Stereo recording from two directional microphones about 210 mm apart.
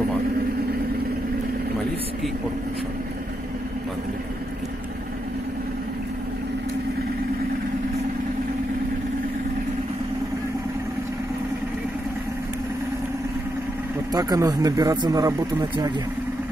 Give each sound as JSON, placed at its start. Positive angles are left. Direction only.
{"t": 14.1, "sound": "speech", "side_deg": -15}